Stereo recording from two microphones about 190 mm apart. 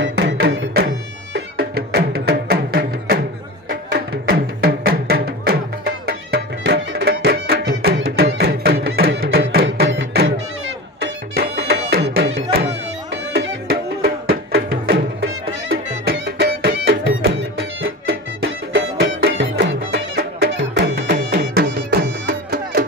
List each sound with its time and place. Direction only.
0.0 s music: 65° right (ahead or behind)
0.8 s music: 55° right (ahead or behind); by 10.4 s 70° right (ahead or behind)
11.0 s music: 55° right (ahead or behind)